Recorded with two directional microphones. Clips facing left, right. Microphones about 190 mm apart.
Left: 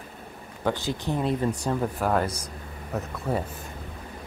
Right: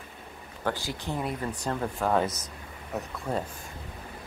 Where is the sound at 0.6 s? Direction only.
20° left (ahead or behind).